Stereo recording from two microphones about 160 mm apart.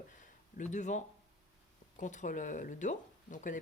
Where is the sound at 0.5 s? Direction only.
50° left (ahead or behind).